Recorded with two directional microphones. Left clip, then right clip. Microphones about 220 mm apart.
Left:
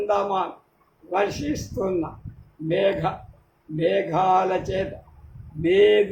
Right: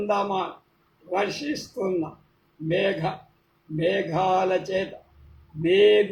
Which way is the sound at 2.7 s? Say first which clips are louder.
Left 3 dB; 15° left (ahead or behind).